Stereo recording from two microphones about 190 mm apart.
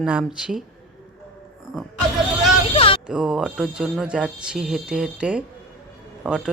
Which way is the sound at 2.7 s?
30° left (ahead or behind).